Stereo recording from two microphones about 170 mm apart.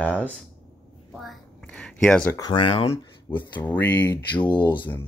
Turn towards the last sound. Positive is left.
turn(degrees=30)  # may be behind; listen again after turning